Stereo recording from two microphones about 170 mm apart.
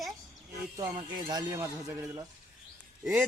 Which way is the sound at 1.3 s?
20° right (ahead or behind).